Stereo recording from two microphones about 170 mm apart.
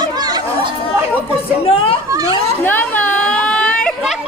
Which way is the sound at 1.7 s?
30° left (ahead or behind).